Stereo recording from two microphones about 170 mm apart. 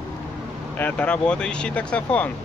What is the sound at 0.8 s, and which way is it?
Speech, 5° left (ahead or behind).